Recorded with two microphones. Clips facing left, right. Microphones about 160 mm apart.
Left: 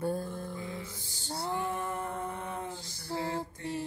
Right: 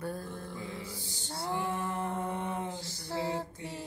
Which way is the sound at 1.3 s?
25° left (ahead or behind).